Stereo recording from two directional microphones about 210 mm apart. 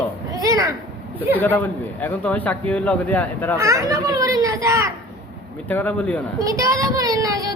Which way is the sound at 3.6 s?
15° right (ahead or behind).